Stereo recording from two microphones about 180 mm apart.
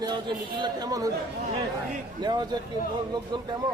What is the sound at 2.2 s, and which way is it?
Speech, 20° right (ahead or behind).